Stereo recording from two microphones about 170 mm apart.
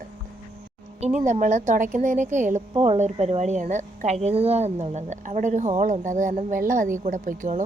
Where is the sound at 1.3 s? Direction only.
50° right (ahead or behind).